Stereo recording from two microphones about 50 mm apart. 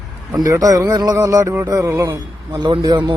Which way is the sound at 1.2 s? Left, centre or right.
Right.